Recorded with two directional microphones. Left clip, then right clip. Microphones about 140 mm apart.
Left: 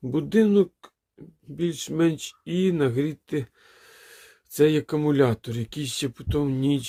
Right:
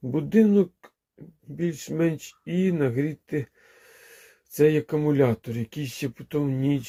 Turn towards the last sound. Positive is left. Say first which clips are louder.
# left 2 dB
turn(degrees=25)  # may be behind; listen again after turning